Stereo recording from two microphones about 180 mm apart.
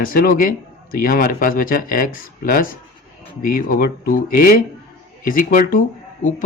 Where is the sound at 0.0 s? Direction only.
50° left (ahead or behind).